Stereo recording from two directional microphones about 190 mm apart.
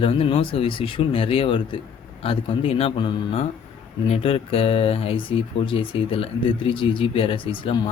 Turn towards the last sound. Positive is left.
turn(degrees=25)  # may be behind; listen again after turning